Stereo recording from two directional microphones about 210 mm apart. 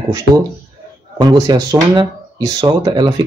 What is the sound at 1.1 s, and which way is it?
Speech, 20° right (ahead or behind).